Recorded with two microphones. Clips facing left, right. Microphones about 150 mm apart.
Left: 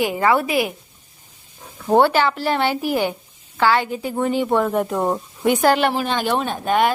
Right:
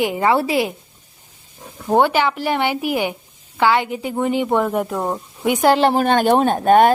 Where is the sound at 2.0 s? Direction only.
15° right (ahead or behind).